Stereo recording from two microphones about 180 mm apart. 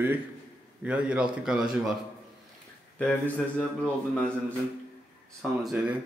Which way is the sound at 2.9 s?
5° left (ahead or behind).